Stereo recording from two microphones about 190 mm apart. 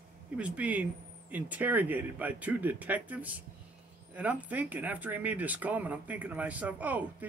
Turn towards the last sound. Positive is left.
turn(degrees=-10)  # may be behind; listen again after turning